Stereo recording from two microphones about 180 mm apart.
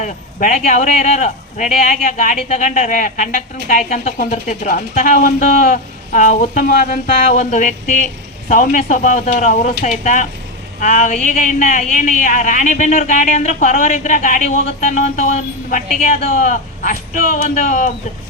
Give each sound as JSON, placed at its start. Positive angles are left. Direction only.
{"t": 0.0, "sound": "a woman's voice", "side_deg": 45}